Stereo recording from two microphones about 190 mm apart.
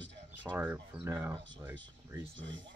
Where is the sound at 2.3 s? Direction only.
75° right (ahead or behind).